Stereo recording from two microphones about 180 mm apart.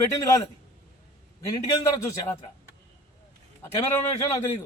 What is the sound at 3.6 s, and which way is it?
Speech, 15° left (ahead or behind).